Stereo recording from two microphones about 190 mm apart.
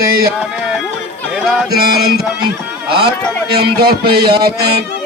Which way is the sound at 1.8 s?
55° right (ahead or behind).